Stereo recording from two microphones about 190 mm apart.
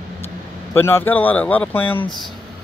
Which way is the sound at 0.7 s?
15° left (ahead or behind).